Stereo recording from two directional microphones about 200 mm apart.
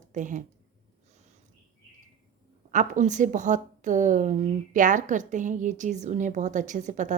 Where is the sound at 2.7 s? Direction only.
40° right (ahead or behind).